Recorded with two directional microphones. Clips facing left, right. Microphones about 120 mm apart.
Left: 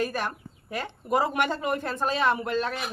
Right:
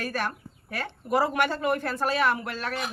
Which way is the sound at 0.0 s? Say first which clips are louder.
Left 2 dB; 15° left (ahead or behind).